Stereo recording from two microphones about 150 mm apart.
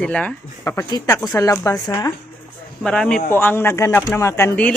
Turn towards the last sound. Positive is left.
turn(degrees=15)  # may be behind; listen again after turning